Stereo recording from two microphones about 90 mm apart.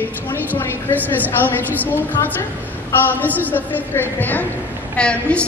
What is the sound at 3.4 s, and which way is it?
A woman's voice, 20° left (ahead or behind).